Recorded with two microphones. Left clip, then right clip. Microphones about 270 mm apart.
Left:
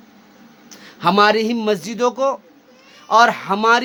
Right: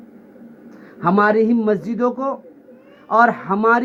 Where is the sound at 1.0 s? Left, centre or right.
Centre.